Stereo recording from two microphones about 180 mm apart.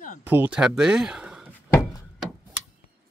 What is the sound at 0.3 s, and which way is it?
Speech, 5° right (ahead or behind).